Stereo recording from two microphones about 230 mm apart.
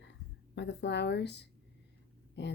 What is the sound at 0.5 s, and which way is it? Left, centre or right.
Speech, left.